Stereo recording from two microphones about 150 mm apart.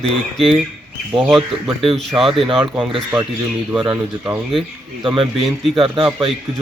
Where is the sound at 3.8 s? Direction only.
30° right (ahead or behind).